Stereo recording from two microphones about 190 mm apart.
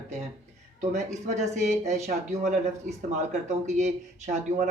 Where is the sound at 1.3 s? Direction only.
40° right (ahead or behind).